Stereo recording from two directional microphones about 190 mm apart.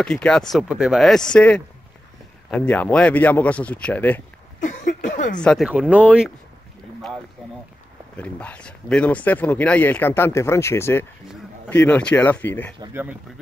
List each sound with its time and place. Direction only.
0.0 s speech: 5° left (ahead or behind)
4.6 s a sound: 40° left (ahead or behind)
5.3 s speech: 5° left (ahead or behind)
8.2 s speech: 5° left (ahead or behind)
12.8 s speech: 10° right (ahead or behind)